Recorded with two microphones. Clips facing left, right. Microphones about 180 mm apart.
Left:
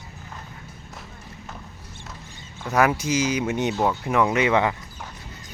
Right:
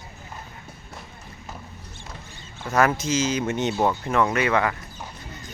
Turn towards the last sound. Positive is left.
turn(degrees=20)  # may be behind; listen again after turning